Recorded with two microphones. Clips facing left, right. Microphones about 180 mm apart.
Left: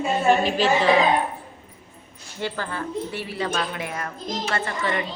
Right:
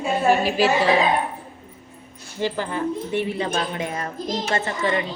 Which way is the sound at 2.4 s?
15° right (ahead or behind).